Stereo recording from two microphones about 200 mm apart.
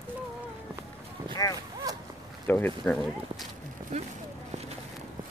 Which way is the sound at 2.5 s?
10° left (ahead or behind).